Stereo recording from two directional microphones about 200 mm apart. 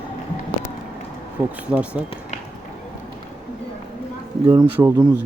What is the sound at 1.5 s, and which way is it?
Speech, 5° right (ahead or behind).